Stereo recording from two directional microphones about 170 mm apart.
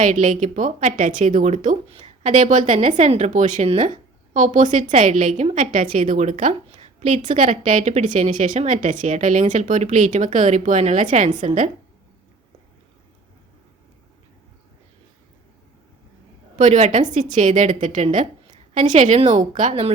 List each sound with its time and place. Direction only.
0.0 s a woman's voice: 50° right (ahead or behind)
16.6 s a woman's voice: 45° right (ahead or behind)